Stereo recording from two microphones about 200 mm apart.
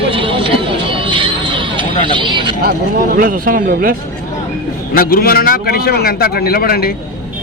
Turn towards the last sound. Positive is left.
turn(degrees=50)  # may be behind; listen again after turning